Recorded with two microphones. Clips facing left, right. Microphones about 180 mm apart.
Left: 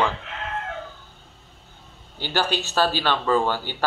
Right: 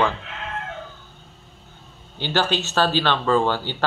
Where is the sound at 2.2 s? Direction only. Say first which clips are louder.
Right 2 dB; 10° left (ahead or behind).